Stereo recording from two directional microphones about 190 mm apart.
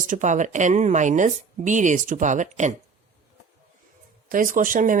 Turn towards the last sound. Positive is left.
turn(degrees=-45)  # may be behind; listen again after turning